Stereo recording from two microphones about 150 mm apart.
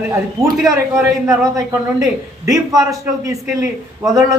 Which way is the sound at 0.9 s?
20° right (ahead or behind).